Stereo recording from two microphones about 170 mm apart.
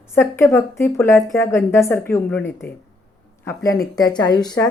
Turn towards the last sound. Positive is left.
turn(degrees=25)  # may be behind; listen again after turning